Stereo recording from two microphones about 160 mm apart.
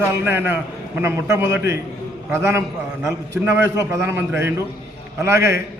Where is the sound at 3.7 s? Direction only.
20° right (ahead or behind).